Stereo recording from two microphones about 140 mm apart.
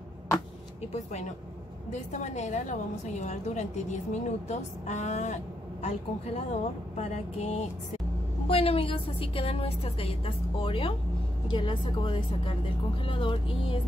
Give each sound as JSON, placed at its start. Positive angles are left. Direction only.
{"t": 0.9, "sound": "a woman's voice", "side_deg": 55}